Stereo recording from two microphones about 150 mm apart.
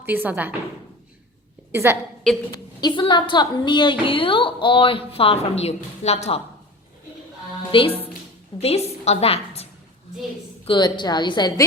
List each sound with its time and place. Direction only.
0.0 s speech: 10° right (ahead or behind)
1.7 s speech: 15° right (ahead or behind)
2.5 s a woman's voice: 30° left (ahead or behind); by 6.4 s 45° left (ahead or behind)
7.7 s a woman's voice: 35° left (ahead or behind)
10.7 s a woman's voice: 30° left (ahead or behind)